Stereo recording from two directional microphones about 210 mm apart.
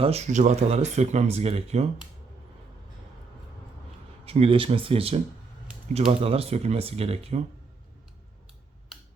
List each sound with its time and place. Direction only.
0.0 s speech: 30° right (ahead or behind)
4.3 s speech: 25° right (ahead or behind)